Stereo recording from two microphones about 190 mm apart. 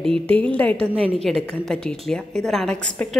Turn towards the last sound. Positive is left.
turn(degrees=5)  # may be behind; listen again after turning